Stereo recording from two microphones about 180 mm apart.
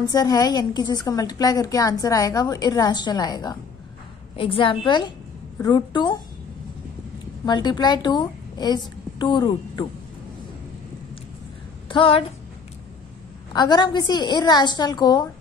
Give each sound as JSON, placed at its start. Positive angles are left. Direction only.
{"t": 0.0, "sound": "a woman's voice", "side_deg": 20}
{"t": 7.4, "sound": "a woman's voice", "side_deg": 25}
{"t": 11.9, "sound": "a woman's voice", "side_deg": 30}
{"t": 13.5, "sound": "a woman's voice", "side_deg": 25}